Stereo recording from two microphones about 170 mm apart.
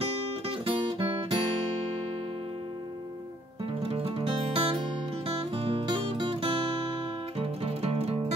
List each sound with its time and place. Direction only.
0.0 s music: 30° right (ahead or behind)
3.8 s music: 35° right (ahead or behind)